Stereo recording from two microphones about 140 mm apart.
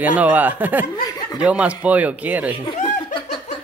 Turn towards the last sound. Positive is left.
turn(degrees=35)  # may be behind; listen again after turning